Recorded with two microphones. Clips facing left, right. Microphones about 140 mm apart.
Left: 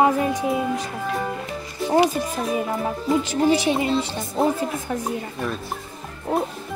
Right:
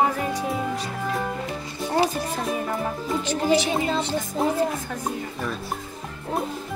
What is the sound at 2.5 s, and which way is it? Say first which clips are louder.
Speech: left 3 dB; 5° left (ahead or behind).